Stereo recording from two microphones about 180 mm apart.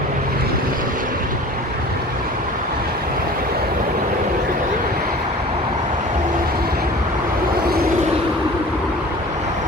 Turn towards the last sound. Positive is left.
turn(degrees=-60)  # may be behind; listen again after turning